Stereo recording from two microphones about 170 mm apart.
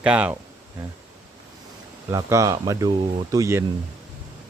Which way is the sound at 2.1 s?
20° right (ahead or behind).